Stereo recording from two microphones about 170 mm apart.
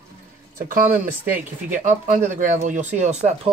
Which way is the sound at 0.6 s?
50° right (ahead or behind).